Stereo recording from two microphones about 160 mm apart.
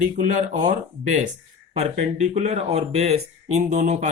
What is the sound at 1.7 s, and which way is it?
Speech, 45° right (ahead or behind).